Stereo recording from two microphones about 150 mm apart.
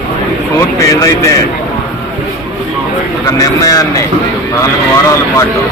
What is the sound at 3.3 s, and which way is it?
Speech, 25° left (ahead or behind).